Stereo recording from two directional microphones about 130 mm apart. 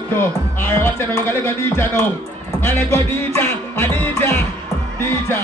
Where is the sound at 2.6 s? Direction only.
15° left (ahead or behind).